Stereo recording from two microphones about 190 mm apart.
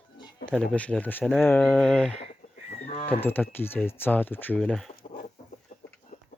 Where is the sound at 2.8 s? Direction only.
30° left (ahead or behind).